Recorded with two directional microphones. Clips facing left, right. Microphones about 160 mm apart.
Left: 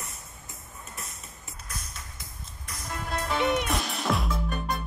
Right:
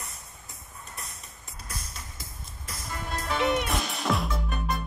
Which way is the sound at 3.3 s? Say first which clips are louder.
Even; centre (ahead or behind).